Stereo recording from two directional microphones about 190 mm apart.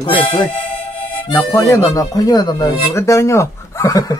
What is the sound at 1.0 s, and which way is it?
Harmonica, 25° left (ahead or behind).